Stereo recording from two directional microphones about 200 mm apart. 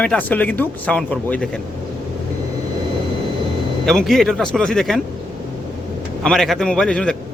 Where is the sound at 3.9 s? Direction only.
Centre (ahead or behind).